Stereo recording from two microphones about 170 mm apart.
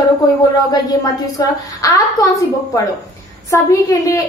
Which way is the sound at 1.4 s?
20° left (ahead or behind).